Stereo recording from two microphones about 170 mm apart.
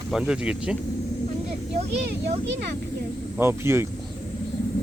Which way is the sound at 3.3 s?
15° right (ahead or behind).